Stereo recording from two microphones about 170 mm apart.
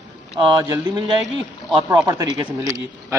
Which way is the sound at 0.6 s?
20° right (ahead or behind).